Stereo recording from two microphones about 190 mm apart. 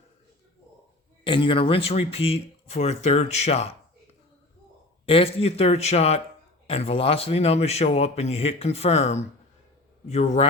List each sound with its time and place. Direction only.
1.2 s speech: 25° left (ahead or behind)
5.0 s speech: 30° left (ahead or behind)